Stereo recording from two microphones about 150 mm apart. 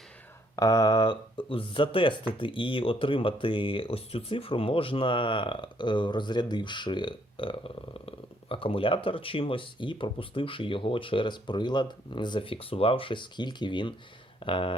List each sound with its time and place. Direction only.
0.5 s speech: 25° left (ahead or behind)